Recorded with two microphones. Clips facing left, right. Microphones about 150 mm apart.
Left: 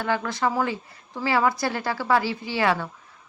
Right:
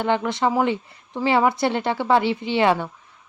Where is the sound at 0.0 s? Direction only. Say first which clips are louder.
Right 4 dB; 25° right (ahead or behind).